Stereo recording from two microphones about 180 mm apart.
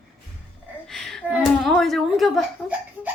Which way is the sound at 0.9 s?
Centre (ahead or behind).